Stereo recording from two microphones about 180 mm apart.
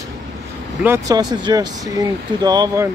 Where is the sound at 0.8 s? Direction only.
15° right (ahead or behind).